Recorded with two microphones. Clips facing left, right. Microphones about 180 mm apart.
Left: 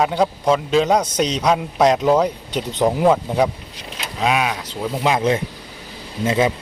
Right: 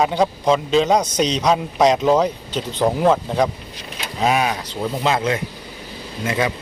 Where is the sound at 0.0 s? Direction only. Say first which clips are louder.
Even; 5° left (ahead or behind).